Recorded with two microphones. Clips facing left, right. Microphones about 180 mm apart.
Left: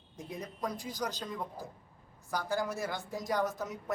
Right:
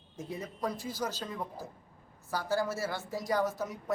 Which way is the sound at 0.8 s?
15° left (ahead or behind).